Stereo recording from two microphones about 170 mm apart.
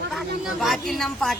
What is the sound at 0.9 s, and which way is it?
Speech, centre (ahead or behind).